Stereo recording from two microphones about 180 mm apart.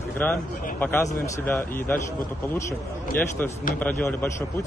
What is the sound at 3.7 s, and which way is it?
Speech, 10° left (ahead or behind).